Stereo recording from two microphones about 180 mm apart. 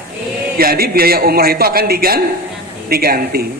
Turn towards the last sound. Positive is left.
turn(degrees=-55)  # may be behind; listen again after turning